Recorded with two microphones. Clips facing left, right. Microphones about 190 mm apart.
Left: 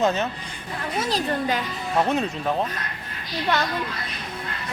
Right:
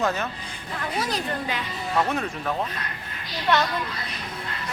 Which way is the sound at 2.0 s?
20° left (ahead or behind).